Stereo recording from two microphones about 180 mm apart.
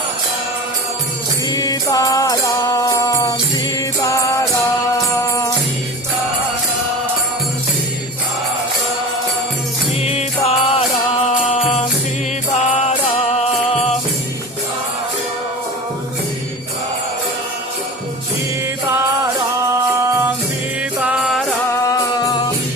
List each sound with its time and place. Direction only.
1.5 s music: 20° left (ahead or behind)
10.0 s music: 35° left (ahead or behind)
13.3 s music: 35° left (ahead or behind)
20.0 s music: 15° right (ahead or behind)
21.0 s music: 5° right (ahead or behind)
21.8 s music: 20° left (ahead or behind)